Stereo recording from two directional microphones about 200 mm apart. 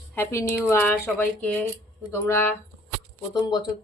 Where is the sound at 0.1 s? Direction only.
10° left (ahead or behind).